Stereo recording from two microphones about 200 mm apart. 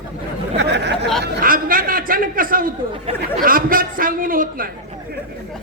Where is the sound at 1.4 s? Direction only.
45° right (ahead or behind).